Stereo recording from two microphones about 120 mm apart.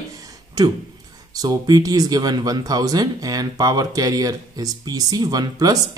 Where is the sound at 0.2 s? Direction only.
30° right (ahead or behind).